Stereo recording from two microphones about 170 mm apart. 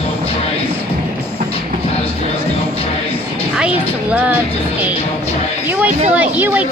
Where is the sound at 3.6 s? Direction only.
5° right (ahead or behind).